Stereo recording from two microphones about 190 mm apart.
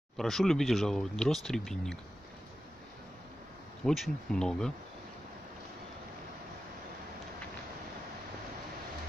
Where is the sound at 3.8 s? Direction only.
Centre (ahead or behind).